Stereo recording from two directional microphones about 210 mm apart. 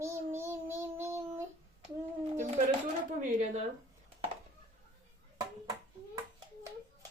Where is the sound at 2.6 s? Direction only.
40° right (ahead or behind).